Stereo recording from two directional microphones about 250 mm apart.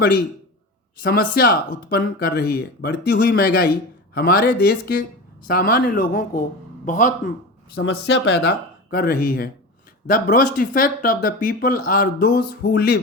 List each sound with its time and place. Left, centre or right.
1.0 s speech: left
7.8 s speech: left